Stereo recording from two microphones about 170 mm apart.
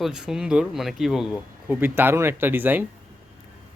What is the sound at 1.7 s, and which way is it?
Speech, 10° right (ahead or behind).